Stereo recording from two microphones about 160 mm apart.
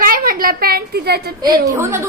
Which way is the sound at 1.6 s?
15° right (ahead or behind).